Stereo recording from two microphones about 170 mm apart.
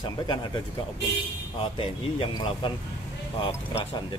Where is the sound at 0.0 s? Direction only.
25° left (ahead or behind).